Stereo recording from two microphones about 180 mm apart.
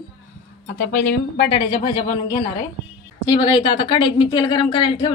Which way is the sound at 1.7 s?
30° left (ahead or behind).